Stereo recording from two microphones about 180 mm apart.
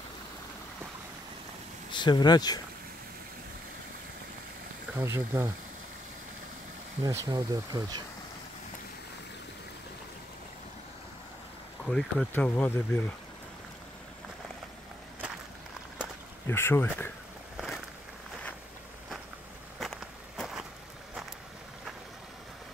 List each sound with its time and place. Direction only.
1.9 s speech: 25° left (ahead or behind)
4.9 s speech: 15° right (ahead or behind)
7.0 s speech: 15° right (ahead or behind)
11.8 s speech: 5° left (ahead or behind)
16.4 s speech: 15° left (ahead or behind)
17.6 s a sound: centre (ahead or behind)
19.8 s walk: centre (ahead or behind)